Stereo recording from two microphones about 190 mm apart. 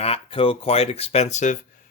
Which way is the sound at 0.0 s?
30° left (ahead or behind).